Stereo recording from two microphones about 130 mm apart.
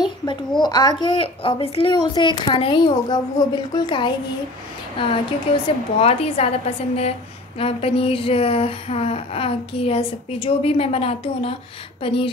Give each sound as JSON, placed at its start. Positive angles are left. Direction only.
{"t": 0.6, "sound": "a woman's voice", "side_deg": 30}
{"t": 1.0, "sound": "a woman's voice", "side_deg": 45}
{"t": 5.9, "sound": "a woman's voice", "side_deg": 50}